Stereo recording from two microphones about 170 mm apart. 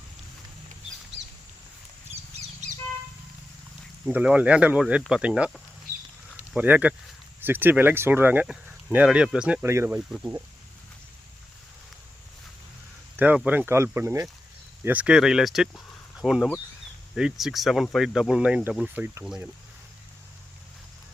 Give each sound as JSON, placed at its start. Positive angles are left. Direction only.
{"t": 1.1, "sound": "a sound", "side_deg": -90}
{"t": 4.0, "sound": "speech", "side_deg": -5}
{"t": 6.5, "sound": "speech", "side_deg": -10}
{"t": 9.6, "sound": "speech", "side_deg": -15}
{"t": 10.1, "sound": "speech", "side_deg": 0}
{"t": 13.1, "sound": "speech", "side_deg": -10}